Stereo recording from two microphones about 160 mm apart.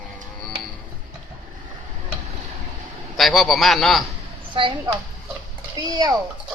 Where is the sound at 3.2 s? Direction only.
Centre (ahead or behind).